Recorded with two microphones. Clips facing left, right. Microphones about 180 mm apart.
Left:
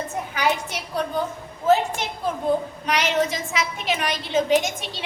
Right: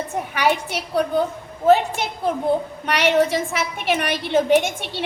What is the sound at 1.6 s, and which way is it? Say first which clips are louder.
A woman's voice: right 3 dB; 65° right (ahead or behind).